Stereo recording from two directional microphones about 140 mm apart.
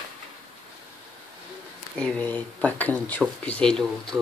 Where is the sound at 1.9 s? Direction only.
5° left (ahead or behind).